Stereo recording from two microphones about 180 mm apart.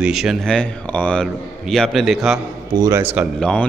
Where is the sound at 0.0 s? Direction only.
5° right (ahead or behind).